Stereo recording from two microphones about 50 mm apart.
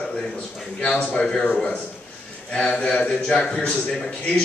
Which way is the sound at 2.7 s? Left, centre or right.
Left.